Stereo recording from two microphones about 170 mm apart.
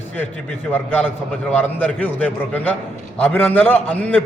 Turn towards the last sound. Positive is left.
turn(degrees=10)  # may be behind; listen again after turning